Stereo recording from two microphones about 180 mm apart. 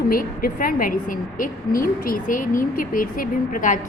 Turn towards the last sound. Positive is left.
turn(degrees=50)  # may be behind; listen again after turning